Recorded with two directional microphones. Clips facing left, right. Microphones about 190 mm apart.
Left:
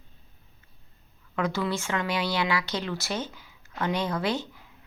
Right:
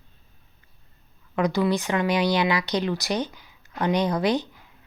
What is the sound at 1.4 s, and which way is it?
A woman's voice, 15° right (ahead or behind).